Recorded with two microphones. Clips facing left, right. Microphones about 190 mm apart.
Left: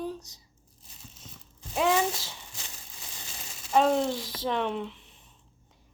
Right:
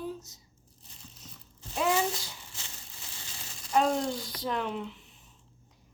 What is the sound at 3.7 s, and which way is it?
Speech, 5° left (ahead or behind).